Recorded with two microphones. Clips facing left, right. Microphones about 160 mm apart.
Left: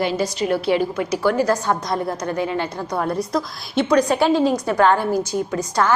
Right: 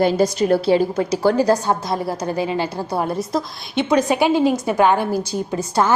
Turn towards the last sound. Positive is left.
turn(degrees=-30)  # may be behind; listen again after turning